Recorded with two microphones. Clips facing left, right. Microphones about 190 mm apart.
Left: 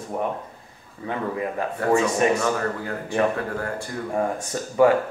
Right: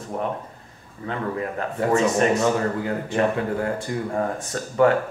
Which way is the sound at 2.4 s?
20° right (ahead or behind).